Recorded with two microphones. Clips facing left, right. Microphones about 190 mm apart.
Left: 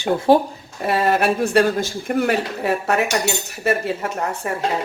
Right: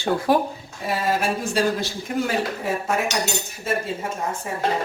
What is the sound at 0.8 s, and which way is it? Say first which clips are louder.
Speech: left 5 dB; 70° left (ahead or behind).